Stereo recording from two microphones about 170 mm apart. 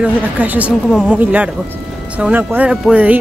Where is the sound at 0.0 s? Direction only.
10° right (ahead or behind).